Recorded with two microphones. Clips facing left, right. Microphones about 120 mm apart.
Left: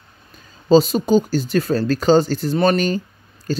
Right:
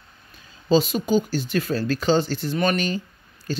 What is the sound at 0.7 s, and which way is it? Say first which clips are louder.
Speech: left 6 dB; 35° left (ahead or behind).